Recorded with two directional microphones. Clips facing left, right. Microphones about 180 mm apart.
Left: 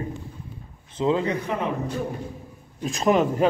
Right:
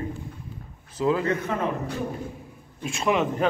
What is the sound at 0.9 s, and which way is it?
Speech, 25° left (ahead or behind).